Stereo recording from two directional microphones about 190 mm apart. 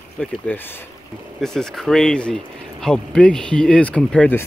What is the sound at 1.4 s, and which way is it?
Speech, centre (ahead or behind).